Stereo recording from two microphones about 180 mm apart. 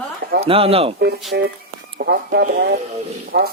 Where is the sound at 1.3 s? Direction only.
70° right (ahead or behind).